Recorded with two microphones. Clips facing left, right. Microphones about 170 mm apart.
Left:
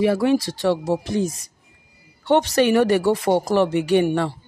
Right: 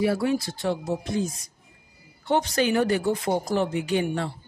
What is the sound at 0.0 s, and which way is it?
Speech, 90° left.